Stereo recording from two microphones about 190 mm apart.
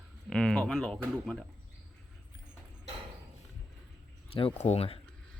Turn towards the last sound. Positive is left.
turn(degrees=35)  # may be behind; listen again after turning